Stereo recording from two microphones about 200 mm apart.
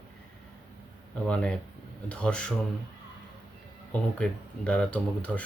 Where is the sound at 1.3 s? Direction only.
5° left (ahead or behind).